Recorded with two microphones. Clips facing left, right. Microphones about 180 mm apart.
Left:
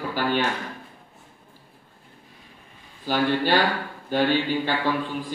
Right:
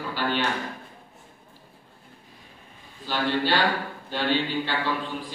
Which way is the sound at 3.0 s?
45° left (ahead or behind).